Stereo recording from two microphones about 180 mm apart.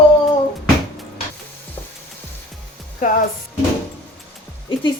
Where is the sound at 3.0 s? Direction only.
50° left (ahead or behind).